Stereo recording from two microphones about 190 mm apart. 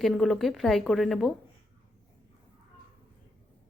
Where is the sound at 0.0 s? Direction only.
Centre (ahead or behind).